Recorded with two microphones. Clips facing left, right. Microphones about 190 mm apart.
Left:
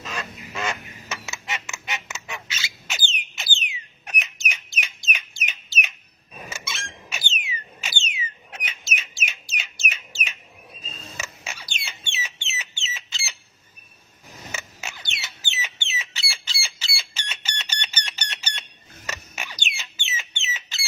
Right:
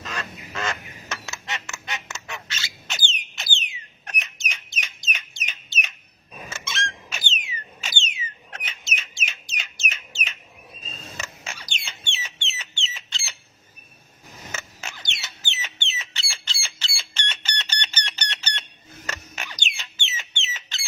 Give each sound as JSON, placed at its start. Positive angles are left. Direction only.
{"t": 0.0, "sound": "duck", "side_deg": 10}
{"t": 4.0, "sound": "bird", "side_deg": 5}
{"t": 6.5, "sound": "a sound", "side_deg": 10}
{"t": 8.2, "sound": "bird", "side_deg": 10}
{"t": 14.5, "sound": "bird", "side_deg": 10}
{"t": 19.0, "sound": "a sound", "side_deg": 10}
{"t": 20.4, "sound": "squawk", "side_deg": 10}